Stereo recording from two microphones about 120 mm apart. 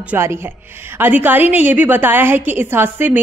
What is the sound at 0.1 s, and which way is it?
A woman's voice, 20° right (ahead or behind).